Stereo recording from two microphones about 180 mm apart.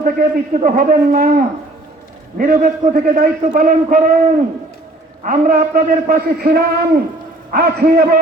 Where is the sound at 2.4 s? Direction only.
50° right (ahead or behind).